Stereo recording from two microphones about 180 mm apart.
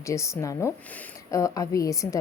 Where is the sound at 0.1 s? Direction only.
15° left (ahead or behind).